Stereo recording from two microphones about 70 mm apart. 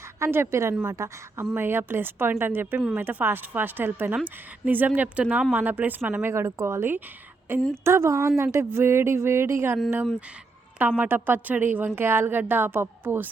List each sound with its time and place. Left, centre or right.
0.2 s a woman's voice: right
6.2 s a woman's voice: right
10.8 s a woman's voice: right